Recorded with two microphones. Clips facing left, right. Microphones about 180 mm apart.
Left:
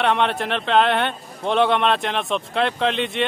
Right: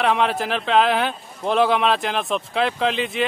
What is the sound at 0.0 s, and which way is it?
Speech, centre (ahead or behind).